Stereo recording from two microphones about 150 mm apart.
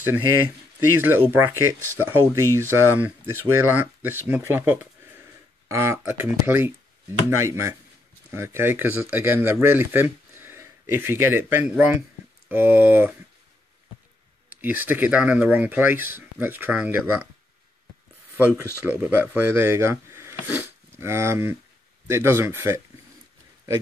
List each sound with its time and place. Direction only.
0.7 s speech: 15° right (ahead or behind)
14.5 s speech: 10° right (ahead or behind)
18.5 s speech: 10° right (ahead or behind)